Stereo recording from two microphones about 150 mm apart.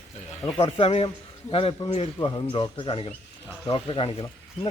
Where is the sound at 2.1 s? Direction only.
30° left (ahead or behind).